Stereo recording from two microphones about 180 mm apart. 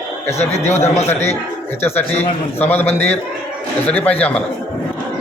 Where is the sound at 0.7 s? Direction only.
40° left (ahead or behind).